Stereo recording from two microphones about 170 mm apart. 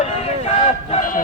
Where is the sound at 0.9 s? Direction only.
55° left (ahead or behind).